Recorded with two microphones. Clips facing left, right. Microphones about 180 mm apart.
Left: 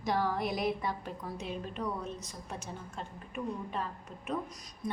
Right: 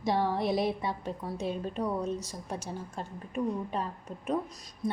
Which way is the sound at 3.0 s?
35° right (ahead or behind).